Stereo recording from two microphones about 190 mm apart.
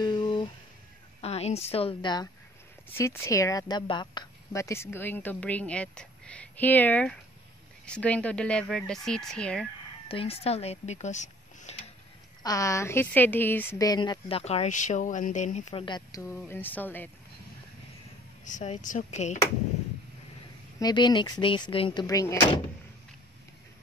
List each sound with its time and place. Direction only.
0.0 s a sound: 20° left (ahead or behind)
1.2 s a woman's voice: 35° left (ahead or behind)
2.9 s a woman's voice: 15° left (ahead or behind)
10.0 s speech: 30° left (ahead or behind)
12.4 s a woman's voice: 15° left (ahead or behind)
14.4 s speech: 35° left (ahead or behind)
15.8 s a woman's voice: 20° left (ahead or behind)
18.4 s speech: 40° left (ahead or behind)
20.8 s speech: 20° left (ahead or behind)